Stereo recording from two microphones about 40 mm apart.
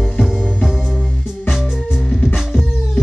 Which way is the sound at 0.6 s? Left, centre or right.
Centre.